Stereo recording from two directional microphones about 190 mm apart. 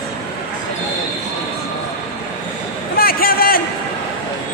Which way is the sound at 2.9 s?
50° left (ahead or behind).